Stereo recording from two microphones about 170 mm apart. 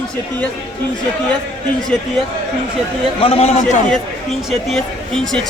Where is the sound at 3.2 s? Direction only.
35° left (ahead or behind).